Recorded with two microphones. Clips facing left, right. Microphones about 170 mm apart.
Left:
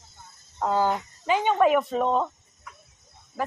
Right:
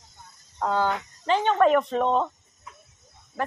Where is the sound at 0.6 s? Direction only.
10° left (ahead or behind).